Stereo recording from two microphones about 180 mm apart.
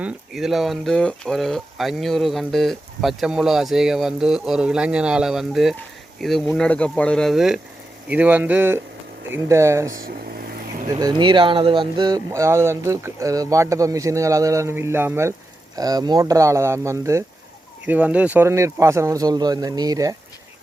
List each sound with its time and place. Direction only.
0.0 s speech: centre (ahead or behind)
10.0 s speech: 55° right (ahead or behind)
10.8 s speech: 25° right (ahead or behind)